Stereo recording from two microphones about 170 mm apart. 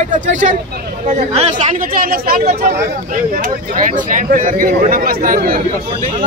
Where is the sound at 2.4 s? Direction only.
40° right (ahead or behind).